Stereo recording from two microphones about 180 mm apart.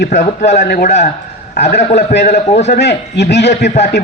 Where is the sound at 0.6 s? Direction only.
60° left (ahead or behind).